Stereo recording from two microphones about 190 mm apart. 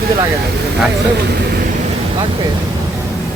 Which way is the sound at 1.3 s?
55° right (ahead or behind).